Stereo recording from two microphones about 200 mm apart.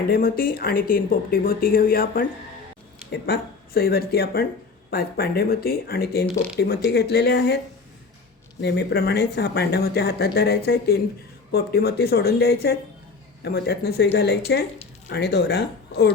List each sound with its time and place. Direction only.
0.1 s speech: 45° left (ahead or behind)
8.6 s speech: 55° left (ahead or behind)